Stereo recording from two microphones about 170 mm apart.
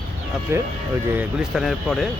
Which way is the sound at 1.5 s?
Centre (ahead or behind).